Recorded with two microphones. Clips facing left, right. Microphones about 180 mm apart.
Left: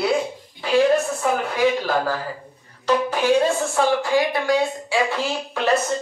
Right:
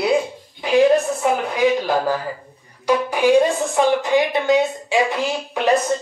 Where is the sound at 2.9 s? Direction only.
15° right (ahead or behind).